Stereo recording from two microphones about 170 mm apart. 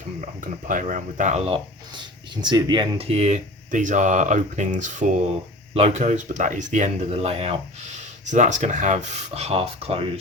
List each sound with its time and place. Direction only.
0.7 s speech: 50° right (ahead or behind)